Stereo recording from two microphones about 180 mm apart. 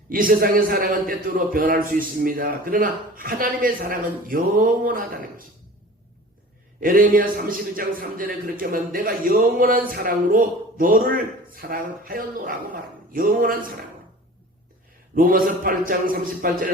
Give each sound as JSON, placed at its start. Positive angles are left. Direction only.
{"t": 0.1, "sound": "a man's voice", "side_deg": -50}
{"t": 6.7, "sound": "a man's voice", "side_deg": -50}
{"t": 15.1, "sound": "a man's voice", "side_deg": -50}